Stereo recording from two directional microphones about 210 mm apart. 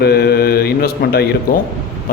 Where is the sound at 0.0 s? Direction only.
50° left (ahead or behind).